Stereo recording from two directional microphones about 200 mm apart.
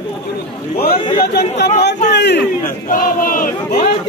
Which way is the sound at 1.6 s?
55° left (ahead or behind).